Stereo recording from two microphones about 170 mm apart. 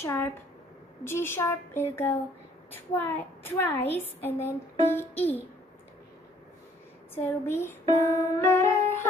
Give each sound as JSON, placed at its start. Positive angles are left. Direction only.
{"t": 0.0, "sound": "speech", "side_deg": 15}
{"t": 7.2, "sound": "speech", "side_deg": 15}